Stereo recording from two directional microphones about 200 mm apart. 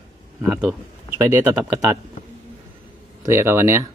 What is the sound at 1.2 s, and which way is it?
Speech, 10° right (ahead or behind).